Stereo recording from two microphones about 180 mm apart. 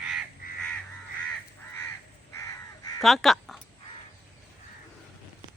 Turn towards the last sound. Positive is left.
turn(degrees=0)  # may be behind; listen again after turning